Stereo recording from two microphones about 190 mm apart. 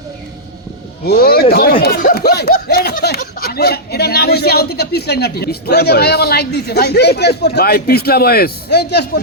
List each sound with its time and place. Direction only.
1.0 s speech: 55° left (ahead or behind)